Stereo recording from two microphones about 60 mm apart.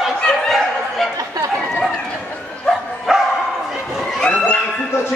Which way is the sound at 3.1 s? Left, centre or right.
Centre.